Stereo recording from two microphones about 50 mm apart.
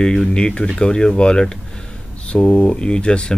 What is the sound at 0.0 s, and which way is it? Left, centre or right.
Speech, centre.